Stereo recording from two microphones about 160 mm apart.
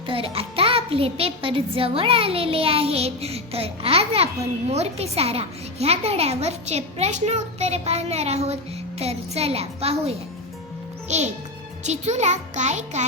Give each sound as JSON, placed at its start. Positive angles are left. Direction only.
{"t": 0.1, "sound": "a child's voice", "side_deg": -35}